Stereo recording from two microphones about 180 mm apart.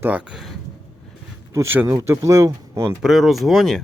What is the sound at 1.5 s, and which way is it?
Speech, 10° right (ahead or behind).